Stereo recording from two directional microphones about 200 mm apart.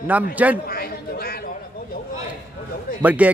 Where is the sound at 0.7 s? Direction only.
50° left (ahead or behind).